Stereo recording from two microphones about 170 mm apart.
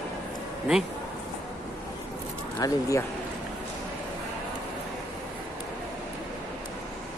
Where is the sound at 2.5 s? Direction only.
20° left (ahead or behind).